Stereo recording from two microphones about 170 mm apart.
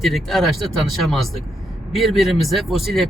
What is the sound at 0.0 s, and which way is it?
A man's voice, centre (ahead or behind).